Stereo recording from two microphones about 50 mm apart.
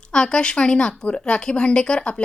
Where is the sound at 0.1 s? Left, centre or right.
Centre.